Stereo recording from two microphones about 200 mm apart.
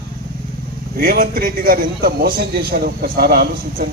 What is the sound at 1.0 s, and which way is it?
A man's voice, 45° right (ahead or behind).